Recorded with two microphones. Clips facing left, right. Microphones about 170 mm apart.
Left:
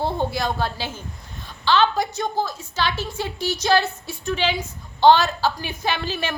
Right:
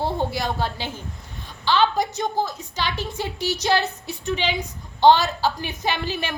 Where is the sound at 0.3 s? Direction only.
15° right (ahead or behind).